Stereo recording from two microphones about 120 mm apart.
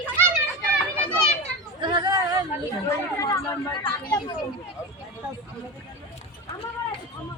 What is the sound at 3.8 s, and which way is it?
Speech, 40° left (ahead or behind).